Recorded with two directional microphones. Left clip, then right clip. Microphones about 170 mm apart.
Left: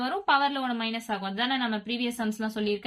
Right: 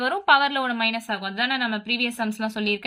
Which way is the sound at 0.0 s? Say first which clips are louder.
Right 6 dB; 35° right (ahead or behind).